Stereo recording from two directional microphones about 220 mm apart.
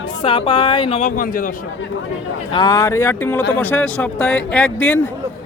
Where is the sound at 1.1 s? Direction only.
40° left (ahead or behind).